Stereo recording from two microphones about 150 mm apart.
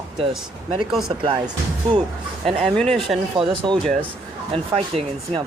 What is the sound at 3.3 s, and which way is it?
Speech, 35° right (ahead or behind).